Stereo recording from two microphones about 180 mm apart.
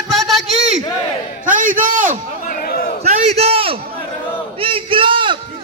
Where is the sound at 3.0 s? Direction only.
40° right (ahead or behind).